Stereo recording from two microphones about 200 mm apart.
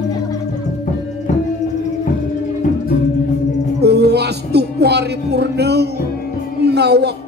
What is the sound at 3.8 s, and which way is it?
Music, 55° right (ahead or behind).